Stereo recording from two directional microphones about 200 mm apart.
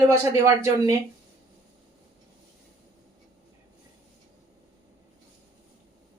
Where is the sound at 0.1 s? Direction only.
15° right (ahead or behind).